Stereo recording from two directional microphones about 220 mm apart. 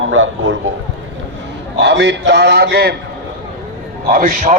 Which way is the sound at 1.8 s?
50° right (ahead or behind).